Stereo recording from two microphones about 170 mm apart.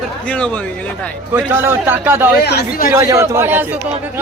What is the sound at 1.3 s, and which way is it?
A man's voice, 15° right (ahead or behind).